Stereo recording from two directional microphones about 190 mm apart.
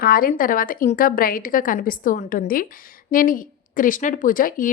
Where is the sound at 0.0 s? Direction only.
50° left (ahead or behind).